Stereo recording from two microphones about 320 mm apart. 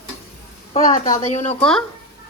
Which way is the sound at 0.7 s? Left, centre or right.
Left.